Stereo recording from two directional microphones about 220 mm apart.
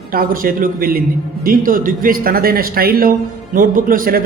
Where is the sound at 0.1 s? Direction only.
40° right (ahead or behind).